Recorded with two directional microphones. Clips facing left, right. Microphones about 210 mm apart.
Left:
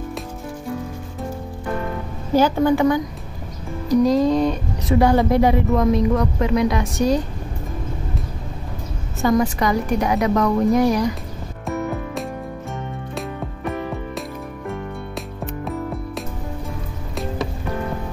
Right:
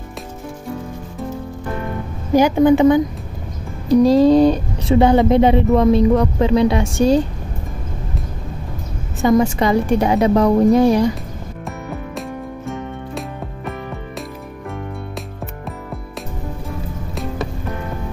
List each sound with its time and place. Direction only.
2.3 s a woman's voice: 15° right (ahead or behind)
3.9 s speech: 30° right (ahead or behind)
9.2 s speech: 25° right (ahead or behind)
11.6 s music: centre (ahead or behind)
15.4 s music: centre (ahead or behind)